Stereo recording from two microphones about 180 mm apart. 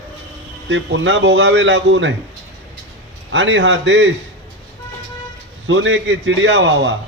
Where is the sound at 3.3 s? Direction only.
90° right.